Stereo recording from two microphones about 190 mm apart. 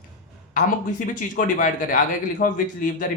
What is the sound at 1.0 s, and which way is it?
Speech, 45° left (ahead or behind).